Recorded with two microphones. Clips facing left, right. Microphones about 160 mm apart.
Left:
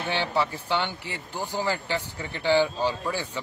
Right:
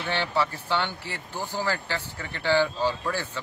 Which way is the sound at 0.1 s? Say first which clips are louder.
Even; 15° left (ahead or behind).